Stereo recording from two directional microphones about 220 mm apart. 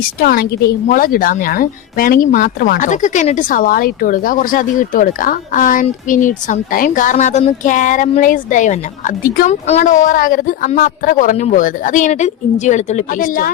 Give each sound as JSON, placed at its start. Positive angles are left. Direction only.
{"t": 0.2, "sound": "a woman's voice", "side_deg": 45}